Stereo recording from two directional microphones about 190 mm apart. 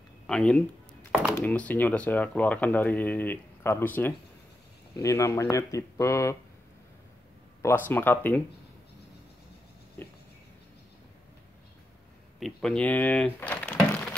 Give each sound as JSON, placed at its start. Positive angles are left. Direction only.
{"t": 0.3, "sound": "speech", "side_deg": 5}
{"t": 7.9, "sound": "speech", "side_deg": 10}
{"t": 10.0, "sound": "a sound", "side_deg": 10}
{"t": 12.4, "sound": "speech", "side_deg": 0}